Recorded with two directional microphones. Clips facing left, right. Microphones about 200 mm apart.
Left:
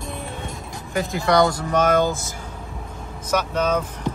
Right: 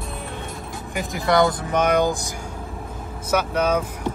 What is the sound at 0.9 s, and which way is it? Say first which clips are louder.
Speech: left 1 dB; 15° right (ahead or behind).